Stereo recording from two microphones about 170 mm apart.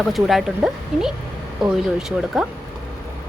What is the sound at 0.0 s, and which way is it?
Speech, centre (ahead or behind).